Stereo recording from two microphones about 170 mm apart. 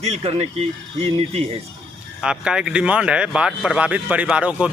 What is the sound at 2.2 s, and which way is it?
Speech, 5° right (ahead or behind).